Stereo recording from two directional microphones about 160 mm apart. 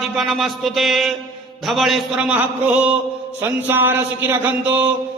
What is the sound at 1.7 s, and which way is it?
A man's voice, centre (ahead or behind).